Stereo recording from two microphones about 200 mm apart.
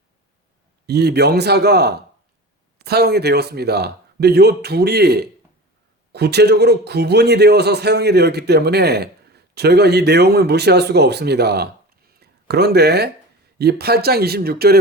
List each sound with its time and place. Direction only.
0.9 s a man's voice: 55° right (ahead or behind)